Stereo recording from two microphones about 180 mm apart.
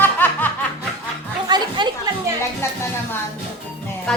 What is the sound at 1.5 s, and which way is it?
Music, 25° right (ahead or behind).